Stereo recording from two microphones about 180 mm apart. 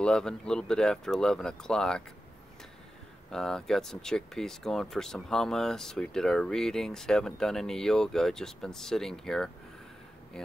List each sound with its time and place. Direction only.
0.0 s speech: 5° left (ahead or behind)
3.3 s speech: 5° left (ahead or behind)